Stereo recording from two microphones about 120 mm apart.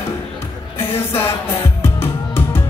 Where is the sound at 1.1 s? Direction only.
20° left (ahead or behind).